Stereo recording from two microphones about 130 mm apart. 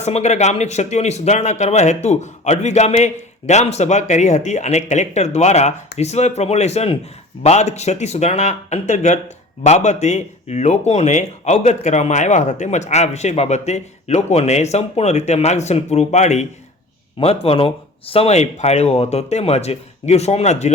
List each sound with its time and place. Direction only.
0.0 s speech: 60° left (ahead or behind)
17.2 s speech: 50° left (ahead or behind)